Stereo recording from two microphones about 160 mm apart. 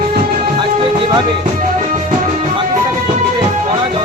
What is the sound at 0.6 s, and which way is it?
Music, 30° right (ahead or behind).